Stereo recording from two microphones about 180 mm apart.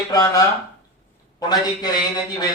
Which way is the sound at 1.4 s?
20° left (ahead or behind).